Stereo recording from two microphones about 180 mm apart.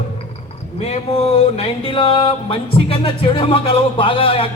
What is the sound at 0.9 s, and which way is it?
A man's voice, 35° left (ahead or behind).